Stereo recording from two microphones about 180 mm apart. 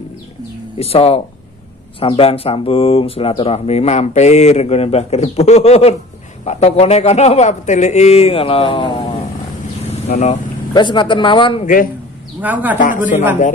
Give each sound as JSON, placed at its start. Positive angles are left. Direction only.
{"t": 0.7, "sound": "speech", "side_deg": 35}
{"t": 10.1, "sound": "speech", "side_deg": 55}
{"t": 10.7, "sound": "a man's voice", "side_deg": 25}
{"t": 11.6, "sound": "speech", "side_deg": 50}
{"t": 12.4, "sound": "a man's voice", "side_deg": -10}
{"t": 12.7, "sound": "speech", "side_deg": 45}